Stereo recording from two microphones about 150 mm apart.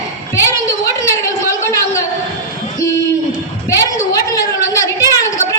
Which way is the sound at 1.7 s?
20° left (ahead or behind).